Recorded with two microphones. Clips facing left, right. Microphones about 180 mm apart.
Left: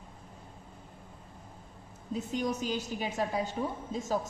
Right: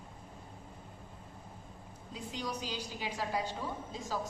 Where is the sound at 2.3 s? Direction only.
45° left (ahead or behind).